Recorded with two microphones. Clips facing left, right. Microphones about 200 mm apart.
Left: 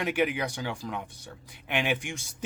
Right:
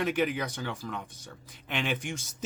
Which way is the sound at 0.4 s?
10° left (ahead or behind).